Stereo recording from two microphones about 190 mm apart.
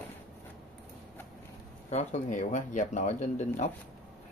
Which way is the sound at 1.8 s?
35° left (ahead or behind).